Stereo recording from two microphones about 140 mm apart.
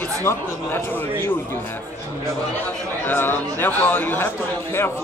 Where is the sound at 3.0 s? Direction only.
15° left (ahead or behind).